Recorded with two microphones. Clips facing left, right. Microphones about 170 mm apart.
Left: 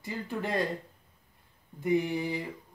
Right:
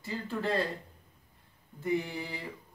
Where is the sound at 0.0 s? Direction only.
15° left (ahead or behind).